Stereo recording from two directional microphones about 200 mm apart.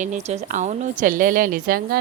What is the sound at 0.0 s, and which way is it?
A woman's voice, 35° right (ahead or behind).